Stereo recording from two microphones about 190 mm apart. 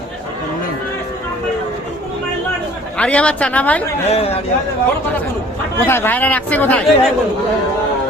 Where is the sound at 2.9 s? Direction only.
5° left (ahead or behind).